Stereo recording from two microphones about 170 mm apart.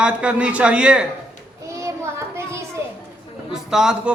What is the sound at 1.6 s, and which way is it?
Child singing, 15° right (ahead or behind).